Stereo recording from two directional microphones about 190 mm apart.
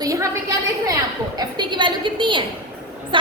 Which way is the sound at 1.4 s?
25° right (ahead or behind).